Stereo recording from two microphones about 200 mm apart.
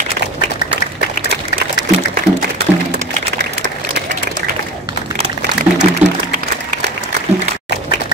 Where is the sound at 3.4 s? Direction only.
60° right (ahead or behind).